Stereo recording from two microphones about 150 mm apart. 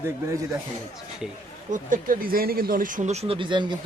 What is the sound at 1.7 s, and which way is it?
Speech, 60° right (ahead or behind).